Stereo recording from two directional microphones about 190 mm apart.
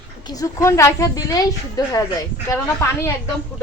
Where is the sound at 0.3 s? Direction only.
20° left (ahead or behind).